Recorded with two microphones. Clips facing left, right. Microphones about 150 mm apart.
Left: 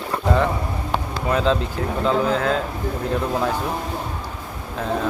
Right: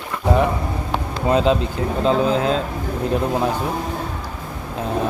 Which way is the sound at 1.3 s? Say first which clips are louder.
Right 3 dB; 20° right (ahead or behind).